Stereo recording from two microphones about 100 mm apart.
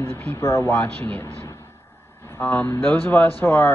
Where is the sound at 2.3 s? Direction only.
20° left (ahead or behind).